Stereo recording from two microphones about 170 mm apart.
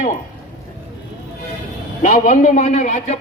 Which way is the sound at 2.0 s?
50° left (ahead or behind).